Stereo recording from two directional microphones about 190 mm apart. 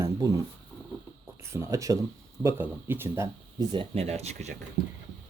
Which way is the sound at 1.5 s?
15° right (ahead or behind).